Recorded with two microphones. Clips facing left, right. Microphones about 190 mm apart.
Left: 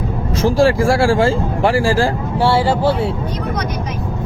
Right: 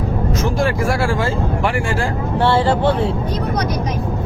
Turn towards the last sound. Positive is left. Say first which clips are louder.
# even
turn(degrees=10)  # may be behind; listen again after turning